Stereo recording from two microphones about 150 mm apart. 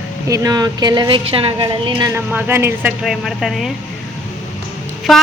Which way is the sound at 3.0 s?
Centre (ahead or behind).